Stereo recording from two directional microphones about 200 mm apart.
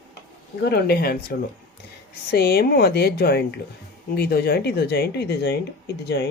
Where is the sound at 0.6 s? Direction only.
50° left (ahead or behind).